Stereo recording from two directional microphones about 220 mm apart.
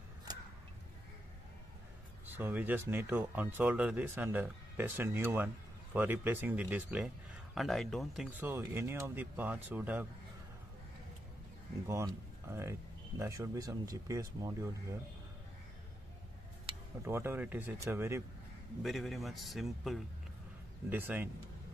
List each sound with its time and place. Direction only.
2.2 s speech: 10° right (ahead or behind)
11.9 s speech: 10° right (ahead or behind)
17.0 s speech: 10° right (ahead or behind)
18.8 s a man's voice: centre (ahead or behind)